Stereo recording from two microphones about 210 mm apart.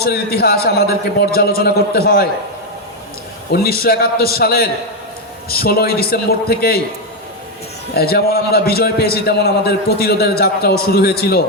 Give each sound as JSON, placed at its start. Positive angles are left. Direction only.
{"t": 0.0, "sound": "a man's voice", "side_deg": 50}
{"t": 3.5, "sound": "a man's voice", "side_deg": 45}
{"t": 7.9, "sound": "a man's voice", "side_deg": 45}